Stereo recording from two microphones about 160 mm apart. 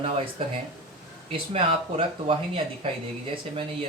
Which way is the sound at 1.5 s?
35° right (ahead or behind).